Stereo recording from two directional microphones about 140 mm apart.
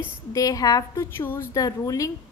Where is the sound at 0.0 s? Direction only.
25° left (ahead or behind).